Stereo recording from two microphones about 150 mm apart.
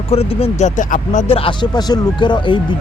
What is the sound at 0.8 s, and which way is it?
Speech, 60° left (ahead or behind).